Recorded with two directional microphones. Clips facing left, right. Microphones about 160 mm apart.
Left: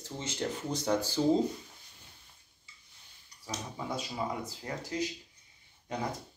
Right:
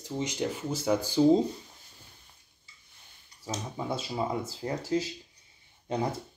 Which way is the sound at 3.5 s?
25° right (ahead or behind).